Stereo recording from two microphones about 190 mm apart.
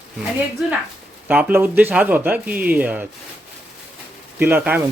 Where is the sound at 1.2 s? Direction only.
10° right (ahead or behind).